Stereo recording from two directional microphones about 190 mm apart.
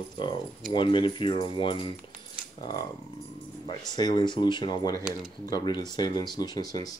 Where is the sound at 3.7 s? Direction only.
20° left (ahead or behind).